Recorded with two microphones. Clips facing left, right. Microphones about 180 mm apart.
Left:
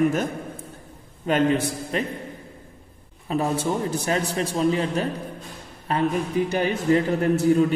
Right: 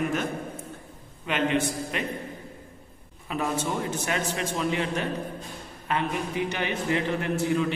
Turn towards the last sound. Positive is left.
turn(degrees=40)  # may be behind; listen again after turning